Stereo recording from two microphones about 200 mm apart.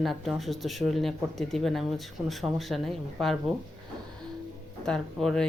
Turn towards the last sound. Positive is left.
turn(degrees=0)  # may be behind; listen again after turning